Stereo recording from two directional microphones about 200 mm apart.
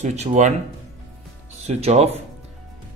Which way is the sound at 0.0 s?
35° right (ahead or behind).